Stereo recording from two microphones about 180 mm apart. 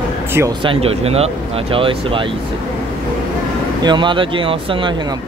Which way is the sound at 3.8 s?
25° right (ahead or behind).